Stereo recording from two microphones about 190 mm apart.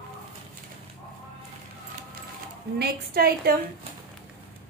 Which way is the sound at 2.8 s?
55° right (ahead or behind).